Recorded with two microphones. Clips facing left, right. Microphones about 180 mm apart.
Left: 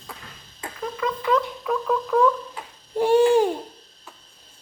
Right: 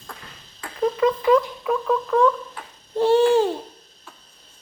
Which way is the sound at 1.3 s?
5° right (ahead or behind).